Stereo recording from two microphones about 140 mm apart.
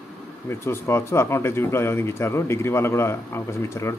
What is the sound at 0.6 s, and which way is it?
Speech, 20° left (ahead or behind).